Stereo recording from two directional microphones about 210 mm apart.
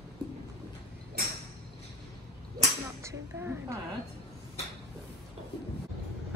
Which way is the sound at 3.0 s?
10° right (ahead or behind).